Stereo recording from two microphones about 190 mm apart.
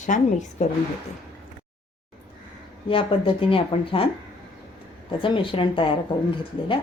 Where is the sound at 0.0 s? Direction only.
40° left (ahead or behind).